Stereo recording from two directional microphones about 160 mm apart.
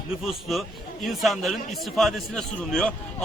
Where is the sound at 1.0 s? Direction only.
Centre (ahead or behind).